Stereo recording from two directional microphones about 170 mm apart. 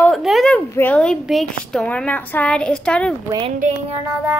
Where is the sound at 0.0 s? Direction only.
Centre (ahead or behind).